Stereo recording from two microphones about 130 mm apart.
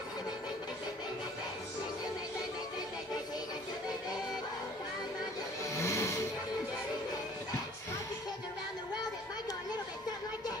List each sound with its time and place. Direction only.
5.6 s music: 20° left (ahead or behind)